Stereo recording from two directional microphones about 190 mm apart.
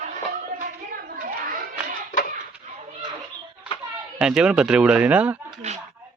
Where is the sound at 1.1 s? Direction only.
45° right (ahead or behind).